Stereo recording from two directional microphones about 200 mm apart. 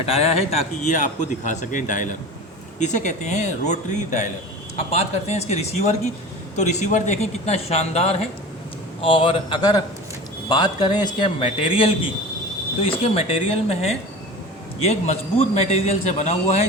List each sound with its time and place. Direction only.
0.0 s a man's voice: 30° left (ahead or behind)
13.0 s a man's voice: 30° left (ahead or behind)